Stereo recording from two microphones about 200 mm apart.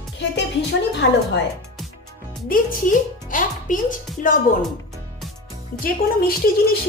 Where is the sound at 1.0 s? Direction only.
60° left (ahead or behind).